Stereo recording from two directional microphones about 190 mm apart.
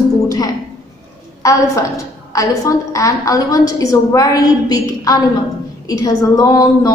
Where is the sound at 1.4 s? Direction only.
15° left (ahead or behind).